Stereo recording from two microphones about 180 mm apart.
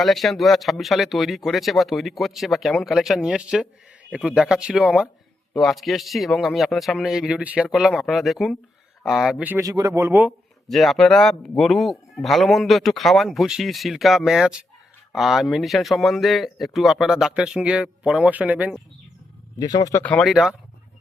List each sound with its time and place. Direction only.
0.0 s speech: centre (ahead or behind)
10.7 s speech: centre (ahead or behind)
19.5 s speech: 20° left (ahead or behind)
20.0 s speech: 5° left (ahead or behind)